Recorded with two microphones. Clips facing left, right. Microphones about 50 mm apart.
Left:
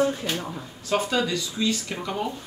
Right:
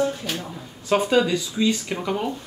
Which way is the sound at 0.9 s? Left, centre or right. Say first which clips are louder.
Right 5 dB; centre.